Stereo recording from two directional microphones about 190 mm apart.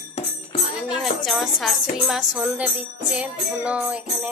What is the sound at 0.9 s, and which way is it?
A woman's voice, centre (ahead or behind).